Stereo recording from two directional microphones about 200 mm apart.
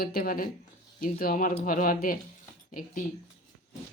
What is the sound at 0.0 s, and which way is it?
Speech, 50° left (ahead or behind).